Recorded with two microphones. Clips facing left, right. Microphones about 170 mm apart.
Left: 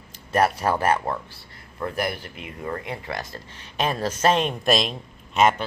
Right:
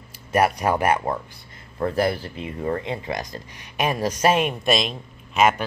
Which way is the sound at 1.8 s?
30° right (ahead or behind).